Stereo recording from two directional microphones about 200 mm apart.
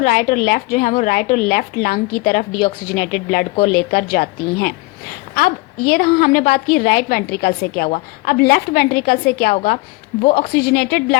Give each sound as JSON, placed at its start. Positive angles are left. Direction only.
{"t": 0.0, "sound": "a woman's voice", "side_deg": 45}